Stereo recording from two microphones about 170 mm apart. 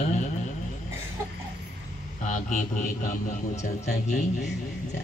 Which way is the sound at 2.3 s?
50° left (ahead or behind).